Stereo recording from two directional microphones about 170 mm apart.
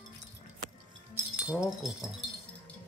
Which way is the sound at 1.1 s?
5° right (ahead or behind).